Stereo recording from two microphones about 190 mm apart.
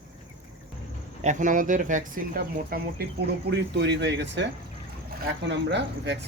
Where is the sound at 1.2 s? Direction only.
45° right (ahead or behind).